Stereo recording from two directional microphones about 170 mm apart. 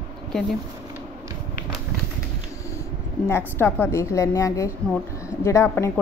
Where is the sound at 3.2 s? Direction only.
15° left (ahead or behind).